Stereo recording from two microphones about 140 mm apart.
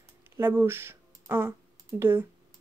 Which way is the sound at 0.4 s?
15° right (ahead or behind).